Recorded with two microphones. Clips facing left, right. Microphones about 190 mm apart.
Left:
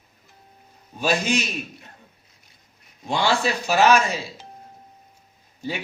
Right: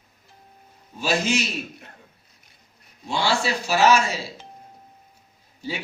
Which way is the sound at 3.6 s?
55° left (ahead or behind).